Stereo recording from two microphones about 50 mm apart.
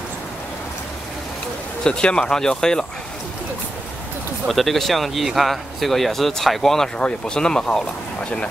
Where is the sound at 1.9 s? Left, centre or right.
Centre.